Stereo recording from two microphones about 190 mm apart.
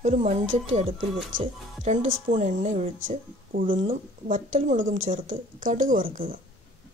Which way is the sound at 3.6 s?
45° right (ahead or behind).